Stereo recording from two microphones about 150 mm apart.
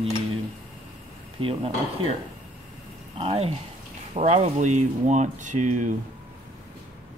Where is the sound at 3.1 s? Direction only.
40° right (ahead or behind).